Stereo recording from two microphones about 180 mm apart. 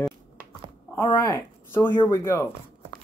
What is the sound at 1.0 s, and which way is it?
Speech, 20° left (ahead or behind).